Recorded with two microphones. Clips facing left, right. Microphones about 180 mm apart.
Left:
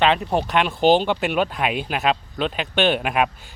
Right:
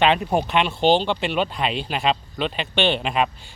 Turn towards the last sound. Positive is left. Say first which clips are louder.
# left 1 dB
turn(degrees=5)  # may be behind; listen again after turning